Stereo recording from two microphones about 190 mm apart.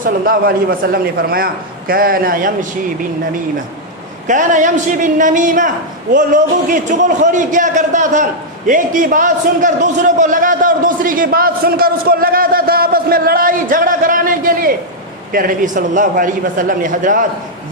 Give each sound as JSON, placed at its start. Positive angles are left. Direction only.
{"t": 0.0, "sound": "a man's voice", "side_deg": -50}
{"t": 4.3, "sound": "a man's voice", "side_deg": -40}